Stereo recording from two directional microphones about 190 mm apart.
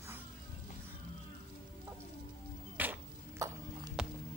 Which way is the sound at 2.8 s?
10° right (ahead or behind).